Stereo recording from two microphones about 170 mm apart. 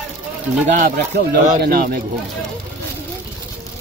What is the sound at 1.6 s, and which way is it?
Speech, 65° right (ahead or behind).